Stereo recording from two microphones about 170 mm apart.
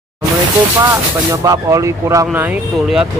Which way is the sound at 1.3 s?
20° right (ahead or behind).